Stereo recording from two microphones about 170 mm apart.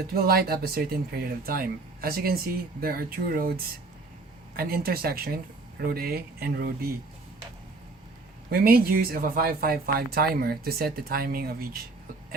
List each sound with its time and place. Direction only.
0.1 s speech: 65° right (ahead or behind)
8.4 s speech: 60° right (ahead or behind)